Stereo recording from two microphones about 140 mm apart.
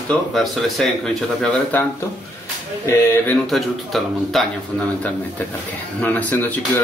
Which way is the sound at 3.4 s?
Centre (ahead or behind).